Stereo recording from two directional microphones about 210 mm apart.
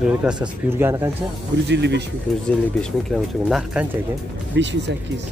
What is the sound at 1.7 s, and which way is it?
Speech, 55° right (ahead or behind).